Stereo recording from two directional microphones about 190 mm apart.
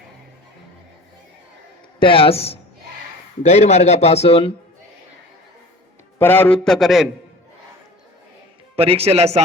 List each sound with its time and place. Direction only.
2.0 s a man's voice: 30° left (ahead or behind)
6.1 s a man's voice: 10° left (ahead or behind)
8.7 s speech: 30° right (ahead or behind)